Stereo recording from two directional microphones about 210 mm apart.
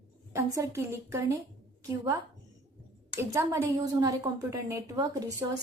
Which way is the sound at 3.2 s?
15° right (ahead or behind).